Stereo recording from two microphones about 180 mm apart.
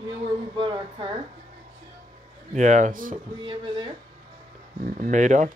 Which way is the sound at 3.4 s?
25° right (ahead or behind).